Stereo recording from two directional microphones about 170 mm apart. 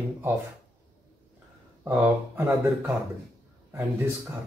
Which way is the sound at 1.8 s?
10° right (ahead or behind).